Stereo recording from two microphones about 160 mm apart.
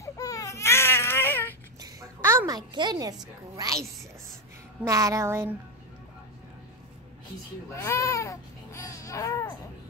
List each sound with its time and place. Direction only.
0.0 s baby cry: 20° left (ahead or behind)
1.8 s a woman's voice: 20° right (ahead or behind)
7.7 s speech: 20° left (ahead or behind)